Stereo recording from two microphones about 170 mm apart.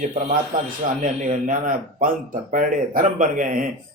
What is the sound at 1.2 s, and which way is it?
A man's voice, 50° right (ahead or behind).